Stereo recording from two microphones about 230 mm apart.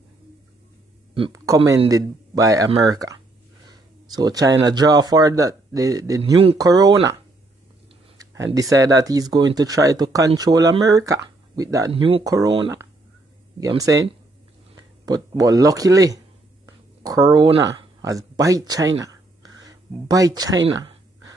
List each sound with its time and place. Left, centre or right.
1.1 s speech: centre
6.3 s speech: right
8.2 s speech: centre
13.6 s speech: centre